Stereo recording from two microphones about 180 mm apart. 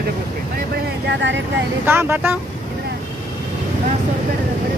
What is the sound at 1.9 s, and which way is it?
Speech, 10° right (ahead or behind).